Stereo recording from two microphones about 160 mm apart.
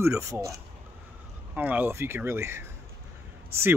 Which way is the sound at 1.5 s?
10° right (ahead or behind).